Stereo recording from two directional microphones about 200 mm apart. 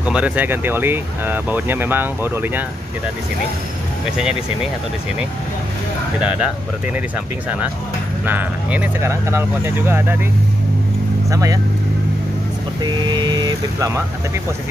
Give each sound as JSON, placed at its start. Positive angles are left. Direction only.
{"t": 0.0, "sound": "speech", "side_deg": -5}
{"t": 6.1, "sound": "speech", "side_deg": -5}
{"t": 8.3, "sound": "speech", "side_deg": -5}
{"t": 11.2, "sound": "speech", "side_deg": -15}
{"t": 12.8, "sound": "speech", "side_deg": -25}